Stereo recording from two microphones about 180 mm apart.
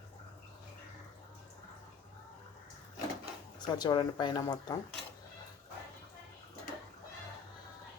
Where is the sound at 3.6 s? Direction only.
25° left (ahead or behind).